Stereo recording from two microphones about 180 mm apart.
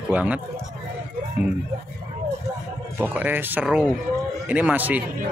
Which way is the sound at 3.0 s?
10° right (ahead or behind).